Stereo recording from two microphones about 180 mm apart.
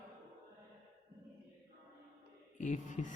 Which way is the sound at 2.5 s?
40° left (ahead or behind).